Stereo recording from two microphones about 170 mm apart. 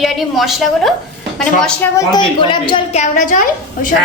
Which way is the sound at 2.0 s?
25° left (ahead or behind).